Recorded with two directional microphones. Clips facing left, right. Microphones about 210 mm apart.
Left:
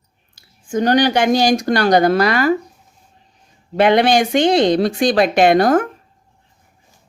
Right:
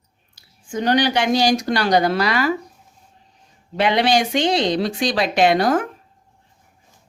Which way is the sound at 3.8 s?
50° left (ahead or behind).